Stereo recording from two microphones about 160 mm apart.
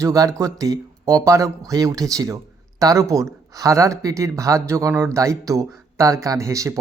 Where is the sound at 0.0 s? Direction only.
20° right (ahead or behind).